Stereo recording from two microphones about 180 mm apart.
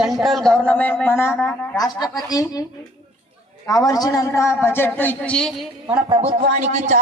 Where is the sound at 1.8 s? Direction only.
20° left (ahead or behind).